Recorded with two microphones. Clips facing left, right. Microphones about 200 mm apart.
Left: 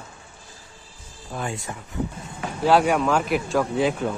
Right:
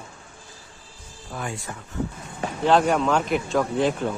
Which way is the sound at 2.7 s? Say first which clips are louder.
Left 1 dB; 5° left (ahead or behind).